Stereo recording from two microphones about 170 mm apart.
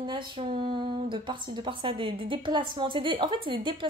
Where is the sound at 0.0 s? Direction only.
25° right (ahead or behind).